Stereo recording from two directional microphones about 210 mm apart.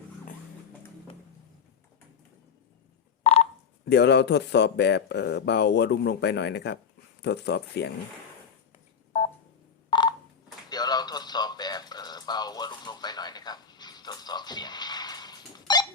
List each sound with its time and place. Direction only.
3.3 s telephone dialing: 30° left (ahead or behind)
3.8 s speech: 50° left (ahead or behind)
9.9 s telephone dialing: 20° left (ahead or behind)
10.7 s a sound: 20° left (ahead or behind)